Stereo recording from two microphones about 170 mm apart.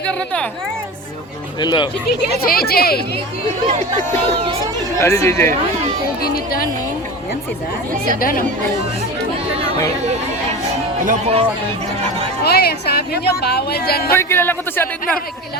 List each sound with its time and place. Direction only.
0.0 s a woman's voice: 5° left (ahead or behind)
1.6 s speech: 25° left (ahead or behind)
2.4 s speech: 60° left (ahead or behind)
4.9 s a man's voice: 15° left (ahead or behind)
8.2 s speech: 55° left (ahead or behind)
11.0 s speech: 50° right (ahead or behind)
12.4 s a sound: 70° left (ahead or behind)
13.4 s a woman's voice: 70° left (ahead or behind)
14.1 s a man's voice: 15° left (ahead or behind)